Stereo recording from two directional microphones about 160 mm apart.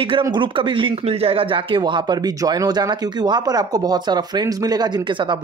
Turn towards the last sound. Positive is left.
turn(degrees=-30)  # may be behind; listen again after turning